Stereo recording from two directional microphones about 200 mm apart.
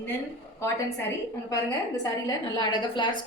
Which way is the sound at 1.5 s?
15° left (ahead or behind).